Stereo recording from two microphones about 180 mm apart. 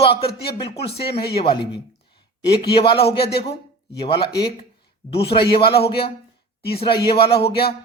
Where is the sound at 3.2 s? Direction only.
60° left (ahead or behind).